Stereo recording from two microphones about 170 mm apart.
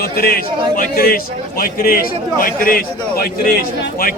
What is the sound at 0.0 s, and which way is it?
A man's voice, 65° left (ahead or behind).